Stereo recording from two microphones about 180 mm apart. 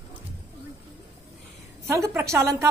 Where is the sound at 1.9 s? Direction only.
15° right (ahead or behind).